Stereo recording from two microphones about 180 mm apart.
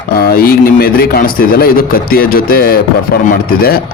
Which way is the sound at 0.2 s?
55° left (ahead or behind).